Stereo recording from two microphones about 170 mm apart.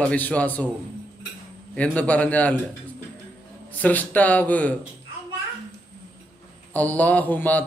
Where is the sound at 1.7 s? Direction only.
10° left (ahead or behind).